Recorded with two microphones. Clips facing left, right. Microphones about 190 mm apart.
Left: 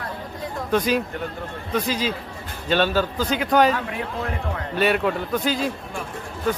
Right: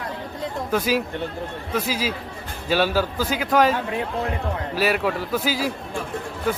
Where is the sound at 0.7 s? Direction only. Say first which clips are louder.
Left 2 dB; 5° right (ahead or behind).